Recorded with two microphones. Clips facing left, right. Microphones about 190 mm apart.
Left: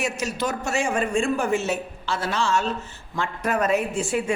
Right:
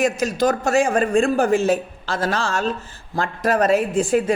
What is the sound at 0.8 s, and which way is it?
Speech, 45° right (ahead or behind).